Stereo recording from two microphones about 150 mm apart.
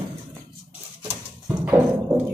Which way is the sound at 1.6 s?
10° right (ahead or behind).